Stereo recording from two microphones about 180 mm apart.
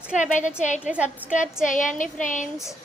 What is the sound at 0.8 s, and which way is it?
Speech, 5° right (ahead or behind).